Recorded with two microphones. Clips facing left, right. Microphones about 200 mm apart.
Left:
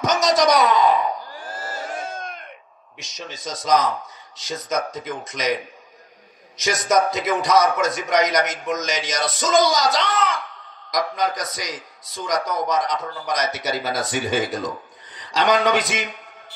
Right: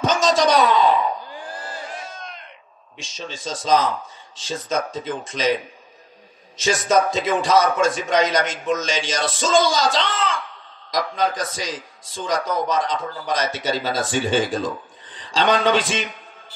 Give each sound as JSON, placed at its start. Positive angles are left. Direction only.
{"t": 0.0, "sound": "a sound", "side_deg": -30}
{"t": 1.8, "sound": "crowd", "side_deg": 50}
{"t": 3.0, "sound": "a man's voice", "side_deg": -30}